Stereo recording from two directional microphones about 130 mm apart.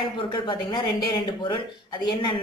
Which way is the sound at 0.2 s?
40° left (ahead or behind).